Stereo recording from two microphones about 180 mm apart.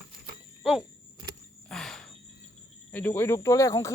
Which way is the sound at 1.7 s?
5° left (ahead or behind).